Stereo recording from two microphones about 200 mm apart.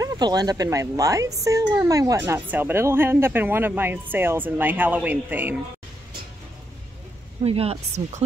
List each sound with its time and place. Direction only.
0.0 s speech: 20° right (ahead or behind)
7.4 s speech: 30° right (ahead or behind)